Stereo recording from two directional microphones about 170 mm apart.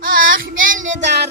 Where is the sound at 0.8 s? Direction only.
90° right.